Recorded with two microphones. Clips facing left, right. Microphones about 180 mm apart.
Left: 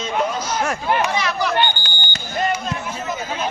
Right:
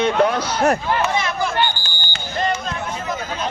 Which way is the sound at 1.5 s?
20° left (ahead or behind).